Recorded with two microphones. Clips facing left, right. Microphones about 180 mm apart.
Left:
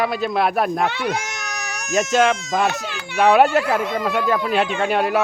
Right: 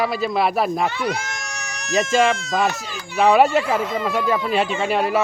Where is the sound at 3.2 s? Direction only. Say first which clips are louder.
Even; centre (ahead or behind).